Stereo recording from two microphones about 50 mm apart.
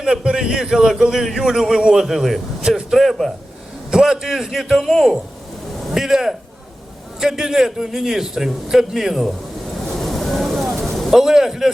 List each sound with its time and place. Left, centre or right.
0.0 s a man's voice: centre
2.6 s a man's voice: centre
3.0 s a man's voice: centre
3.9 s a man's voice: centre
9.7 s vehicle: centre
11.1 s a man's voice: centre